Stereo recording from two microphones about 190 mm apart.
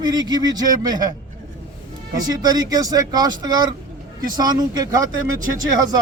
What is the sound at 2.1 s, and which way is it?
Speech, 20° right (ahead or behind).